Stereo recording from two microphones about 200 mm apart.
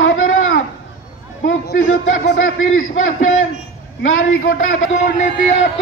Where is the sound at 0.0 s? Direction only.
85° left.